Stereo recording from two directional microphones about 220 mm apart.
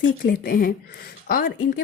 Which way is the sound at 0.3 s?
45° left (ahead or behind).